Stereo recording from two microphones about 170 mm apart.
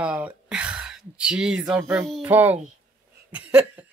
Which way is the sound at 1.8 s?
15° right (ahead or behind).